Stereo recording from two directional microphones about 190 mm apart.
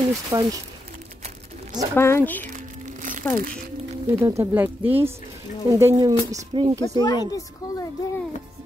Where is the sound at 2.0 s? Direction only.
10° left (ahead or behind).